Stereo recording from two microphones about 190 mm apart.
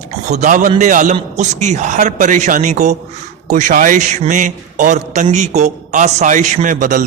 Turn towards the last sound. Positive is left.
turn(degrees=-45)  # may be behind; listen again after turning